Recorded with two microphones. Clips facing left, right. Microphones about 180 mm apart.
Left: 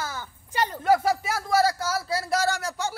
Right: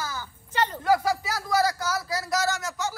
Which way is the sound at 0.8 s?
25° left (ahead or behind).